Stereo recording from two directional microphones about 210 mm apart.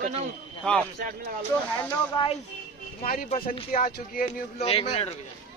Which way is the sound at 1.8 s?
25° left (ahead or behind).